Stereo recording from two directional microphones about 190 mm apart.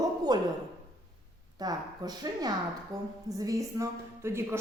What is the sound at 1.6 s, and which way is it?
A woman's voice, 20° right (ahead or behind).